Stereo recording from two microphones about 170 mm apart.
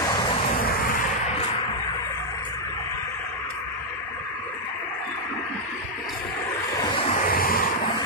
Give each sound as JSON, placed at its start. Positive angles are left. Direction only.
{"t": 0.0, "sound": "vehicle", "side_deg": 25}
{"t": 6.8, "sound": "waves", "side_deg": 30}
{"t": 7.2, "sound": "waves", "side_deg": 60}